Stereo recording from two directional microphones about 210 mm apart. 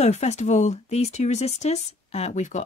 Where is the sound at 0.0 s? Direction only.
30° left (ahead or behind).